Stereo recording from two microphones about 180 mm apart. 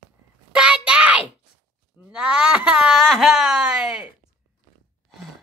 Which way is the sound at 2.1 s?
5° right (ahead or behind).